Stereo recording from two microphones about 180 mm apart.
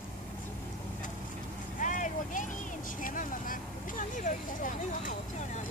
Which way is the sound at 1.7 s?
45° left (ahead or behind).